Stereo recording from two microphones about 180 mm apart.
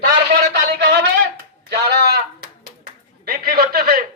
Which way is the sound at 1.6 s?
65° right (ahead or behind).